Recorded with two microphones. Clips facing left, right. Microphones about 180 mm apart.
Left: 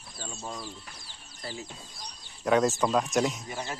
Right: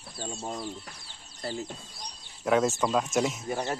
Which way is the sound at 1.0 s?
30° right (ahead or behind).